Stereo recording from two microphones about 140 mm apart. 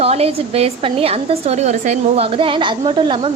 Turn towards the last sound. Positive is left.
turn(degrees=-35)  # may be behind; listen again after turning